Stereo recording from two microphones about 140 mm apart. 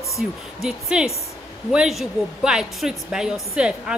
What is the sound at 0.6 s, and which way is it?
A woman's voice, 5° right (ahead or behind).